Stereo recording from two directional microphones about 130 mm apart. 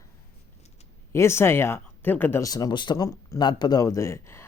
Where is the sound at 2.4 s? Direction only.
30° left (ahead or behind).